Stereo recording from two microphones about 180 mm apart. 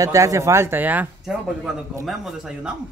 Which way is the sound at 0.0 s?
20° right (ahead or behind).